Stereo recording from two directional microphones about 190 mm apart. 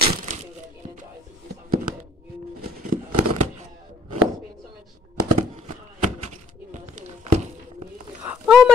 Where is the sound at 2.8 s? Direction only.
45° right (ahead or behind).